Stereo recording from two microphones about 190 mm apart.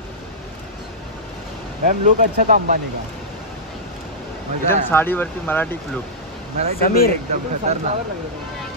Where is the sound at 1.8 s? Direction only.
45° right (ahead or behind).